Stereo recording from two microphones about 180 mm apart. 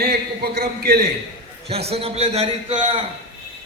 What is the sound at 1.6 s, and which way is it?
A man's voice, 35° right (ahead or behind).